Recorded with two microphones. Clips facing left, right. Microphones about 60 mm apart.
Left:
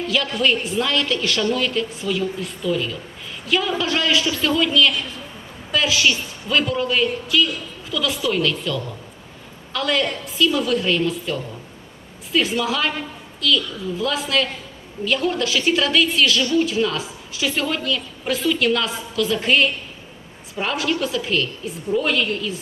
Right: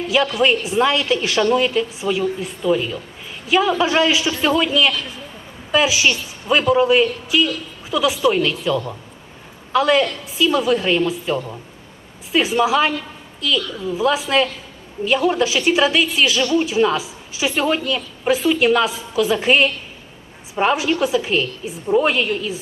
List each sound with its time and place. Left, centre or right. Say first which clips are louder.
0.3 s a woman's voice: right 3 dB; centre
14.0 s a woman's voice: right 5 dB; right